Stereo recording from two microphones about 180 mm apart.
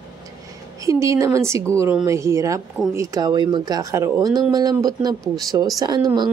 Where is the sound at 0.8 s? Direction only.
15° right (ahead or behind).